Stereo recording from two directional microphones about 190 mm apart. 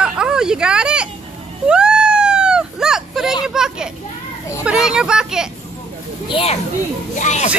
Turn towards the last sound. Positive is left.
turn(degrees=40)  # may be behind; listen again after turning